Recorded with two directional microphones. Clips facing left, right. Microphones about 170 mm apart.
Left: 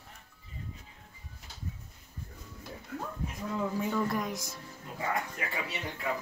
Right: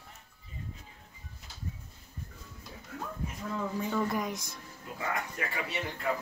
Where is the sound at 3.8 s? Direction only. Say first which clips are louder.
Even; centre (ahead or behind).